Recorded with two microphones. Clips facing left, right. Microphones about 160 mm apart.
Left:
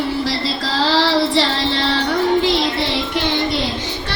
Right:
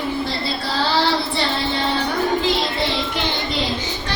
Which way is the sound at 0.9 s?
90° left.